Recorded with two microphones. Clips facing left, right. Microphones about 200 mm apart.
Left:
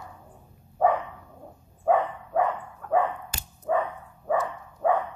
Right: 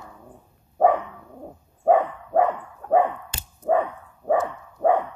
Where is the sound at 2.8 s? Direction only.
25° right (ahead or behind).